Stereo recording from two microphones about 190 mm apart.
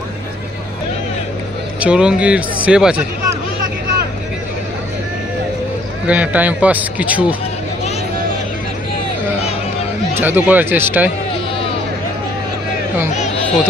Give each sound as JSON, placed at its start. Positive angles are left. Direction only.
{"t": 1.8, "sound": "speech", "side_deg": -5}
{"t": 6.0, "sound": "speech", "side_deg": -5}
{"t": 10.2, "sound": "speech", "side_deg": -10}
{"t": 13.1, "sound": "a sound", "side_deg": 40}